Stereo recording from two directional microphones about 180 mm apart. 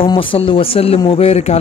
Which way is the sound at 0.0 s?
30° left (ahead or behind).